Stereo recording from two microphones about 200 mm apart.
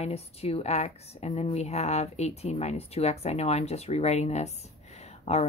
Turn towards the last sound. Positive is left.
turn(degrees=35)  # may be behind; listen again after turning